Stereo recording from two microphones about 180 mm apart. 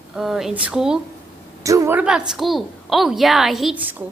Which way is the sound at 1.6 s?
15° right (ahead or behind).